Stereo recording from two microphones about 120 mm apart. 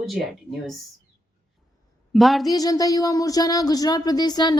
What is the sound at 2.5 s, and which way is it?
Speech, 30° left (ahead or behind).